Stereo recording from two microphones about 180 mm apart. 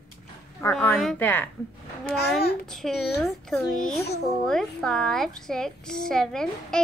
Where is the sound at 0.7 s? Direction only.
5° left (ahead or behind).